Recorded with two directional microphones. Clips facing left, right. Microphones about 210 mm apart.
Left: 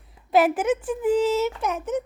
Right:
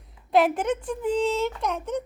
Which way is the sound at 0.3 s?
5° left (ahead or behind).